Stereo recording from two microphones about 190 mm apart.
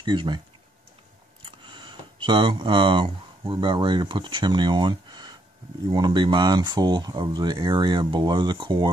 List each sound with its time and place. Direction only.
0.0 s speech: 25° right (ahead or behind)
1.4 s speech: 25° right (ahead or behind)